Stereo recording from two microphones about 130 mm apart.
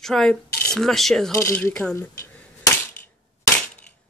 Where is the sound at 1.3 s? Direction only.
15° left (ahead or behind).